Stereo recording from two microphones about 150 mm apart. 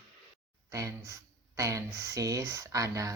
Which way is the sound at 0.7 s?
20° right (ahead or behind).